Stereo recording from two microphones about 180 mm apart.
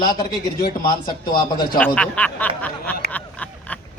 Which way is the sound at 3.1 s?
10° left (ahead or behind).